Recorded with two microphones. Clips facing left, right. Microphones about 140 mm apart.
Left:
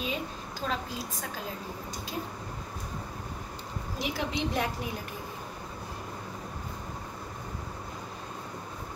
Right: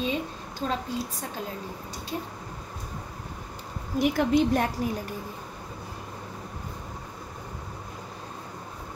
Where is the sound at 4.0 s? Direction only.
50° right (ahead or behind).